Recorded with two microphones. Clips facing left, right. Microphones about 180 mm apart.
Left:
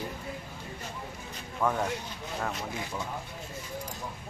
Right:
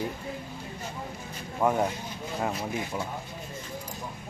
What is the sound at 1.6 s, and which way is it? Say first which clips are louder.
Speech: right 4 dB; 20° right (ahead or behind).